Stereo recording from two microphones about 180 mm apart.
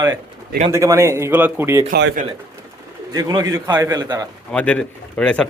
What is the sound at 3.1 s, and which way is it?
A man's voice, 20° right (ahead or behind).